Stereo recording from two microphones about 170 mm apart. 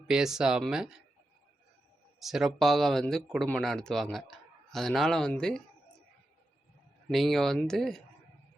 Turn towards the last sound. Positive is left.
turn(degrees=5)  # may be behind; listen again after turning